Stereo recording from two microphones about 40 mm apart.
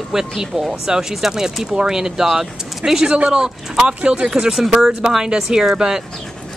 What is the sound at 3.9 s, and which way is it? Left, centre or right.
Speech, right.